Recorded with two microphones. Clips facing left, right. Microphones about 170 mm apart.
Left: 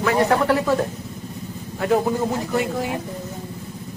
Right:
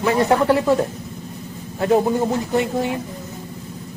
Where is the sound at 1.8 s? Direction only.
25° right (ahead or behind).